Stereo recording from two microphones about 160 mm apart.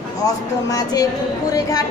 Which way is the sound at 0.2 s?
20° left (ahead or behind).